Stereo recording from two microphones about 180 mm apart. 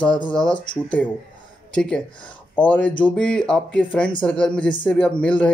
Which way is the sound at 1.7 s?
5° left (ahead or behind).